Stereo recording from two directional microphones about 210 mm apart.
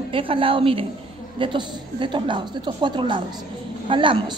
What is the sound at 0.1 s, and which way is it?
A woman's voice, 25° right (ahead or behind).